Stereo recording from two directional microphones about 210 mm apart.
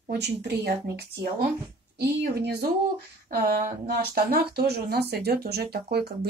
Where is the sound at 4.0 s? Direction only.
45° right (ahead or behind).